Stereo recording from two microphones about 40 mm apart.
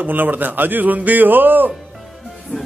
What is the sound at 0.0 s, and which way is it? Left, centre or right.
A man's voice, right.